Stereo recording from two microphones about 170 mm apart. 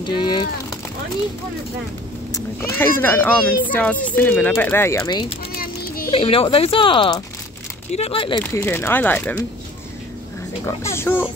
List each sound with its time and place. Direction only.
0.0 s speech: 25° left (ahead or behind)
2.3 s speech: 15° left (ahead or behind)
6.1 s speech: 35° left (ahead or behind)
8.5 s speech: 15° left (ahead or behind)
10.6 s speech: 15° left (ahead or behind)